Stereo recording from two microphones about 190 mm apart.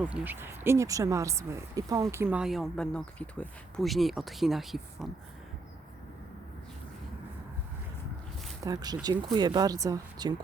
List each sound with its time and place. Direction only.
0.0 s speech: 10° right (ahead or behind)
8.6 s speech: 20° right (ahead or behind)